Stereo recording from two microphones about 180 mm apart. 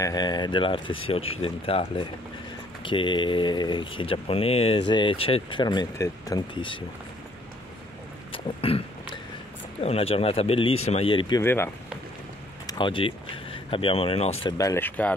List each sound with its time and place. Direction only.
0.0 s speech: 20° left (ahead or behind)
8.3 s burping: 30° left (ahead or behind)
9.8 s speech: 35° left (ahead or behind)
11.4 s speech: 15° left (ahead or behind)
12.6 s speech: 25° left (ahead or behind)
14.4 s speech: 20° left (ahead or behind)